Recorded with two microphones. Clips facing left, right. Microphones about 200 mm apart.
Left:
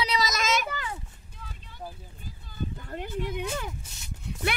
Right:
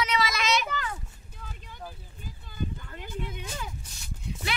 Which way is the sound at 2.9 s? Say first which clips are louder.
Left 5 dB; 55° left (ahead or behind).